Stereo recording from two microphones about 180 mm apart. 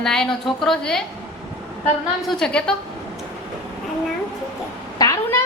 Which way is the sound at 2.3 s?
5° left (ahead or behind).